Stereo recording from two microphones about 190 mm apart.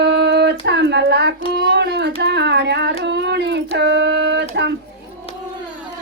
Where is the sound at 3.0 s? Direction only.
60° right (ahead or behind).